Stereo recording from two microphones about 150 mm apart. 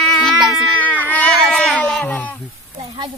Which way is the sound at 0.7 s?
10° left (ahead or behind).